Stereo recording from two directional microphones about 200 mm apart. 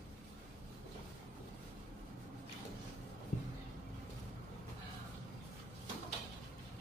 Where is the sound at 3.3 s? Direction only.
40° left (ahead or behind).